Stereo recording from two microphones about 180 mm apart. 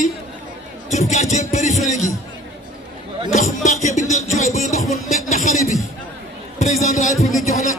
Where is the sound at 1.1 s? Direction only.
40° left (ahead or behind).